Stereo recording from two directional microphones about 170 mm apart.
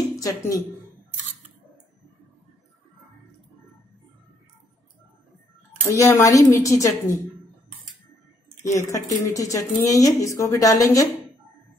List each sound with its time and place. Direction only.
0.1 s a woman's voice: 20° left (ahead or behind)
5.9 s a woman's voice: 20° left (ahead or behind)
8.7 s speech: 20° left (ahead or behind)